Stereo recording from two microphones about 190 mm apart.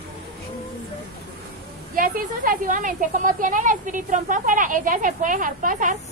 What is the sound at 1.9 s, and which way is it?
A woman's voice, 45° right (ahead or behind).